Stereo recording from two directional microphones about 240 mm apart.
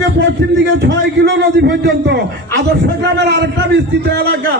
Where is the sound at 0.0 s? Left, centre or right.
Right.